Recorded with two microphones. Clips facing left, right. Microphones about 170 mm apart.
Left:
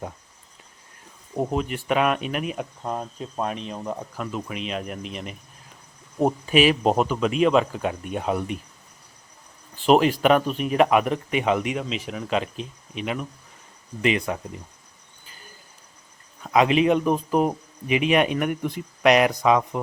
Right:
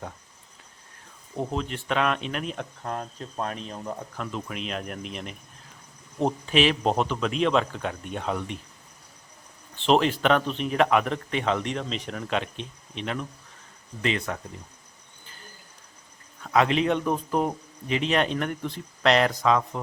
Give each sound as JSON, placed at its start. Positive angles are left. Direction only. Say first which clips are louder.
{"t": 1.4, "sound": "speech", "louder": "left 4 dB", "side_deg": 10}
{"t": 2.8, "sound": "speech", "louder": "left 2 dB", "side_deg": 20}
{"t": 4.2, "sound": "speech", "louder": "left 3 dB", "side_deg": 5}
{"t": 9.7, "sound": "speech", "louder": "left 4 dB", "side_deg": 10}
{"t": 16.4, "sound": "speech", "louder": "left 3 dB", "side_deg": 15}